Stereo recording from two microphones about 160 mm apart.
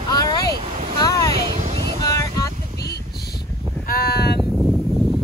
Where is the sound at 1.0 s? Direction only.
20° left (ahead or behind).